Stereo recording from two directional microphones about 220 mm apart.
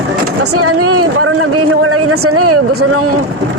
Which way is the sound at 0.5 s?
90° right.